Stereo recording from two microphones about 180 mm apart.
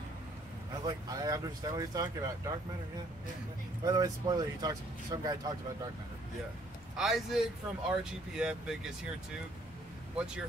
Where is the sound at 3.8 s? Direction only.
20° right (ahead or behind).